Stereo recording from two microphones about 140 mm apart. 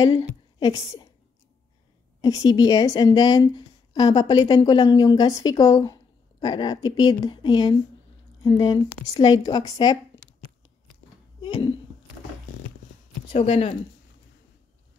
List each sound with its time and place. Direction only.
0.2 s a woman's voice: 25° left (ahead or behind)
2.2 s a woman's voice: 25° left (ahead or behind)
11.4 s a sound: 35° left (ahead or behind)
13.3 s speech: 50° left (ahead or behind)